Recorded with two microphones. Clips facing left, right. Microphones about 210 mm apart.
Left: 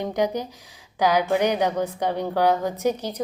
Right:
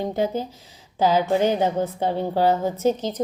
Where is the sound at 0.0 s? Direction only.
15° left (ahead or behind).